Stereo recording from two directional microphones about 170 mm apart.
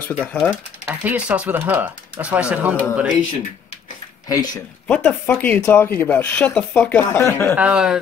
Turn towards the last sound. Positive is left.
turn(degrees=-5)  # may be behind; listen again after turning